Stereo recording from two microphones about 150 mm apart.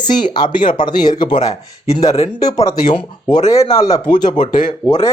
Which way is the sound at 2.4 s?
25° left (ahead or behind).